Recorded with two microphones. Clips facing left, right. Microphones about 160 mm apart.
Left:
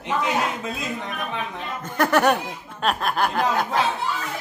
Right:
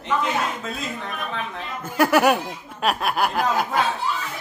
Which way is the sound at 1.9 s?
10° right (ahead or behind).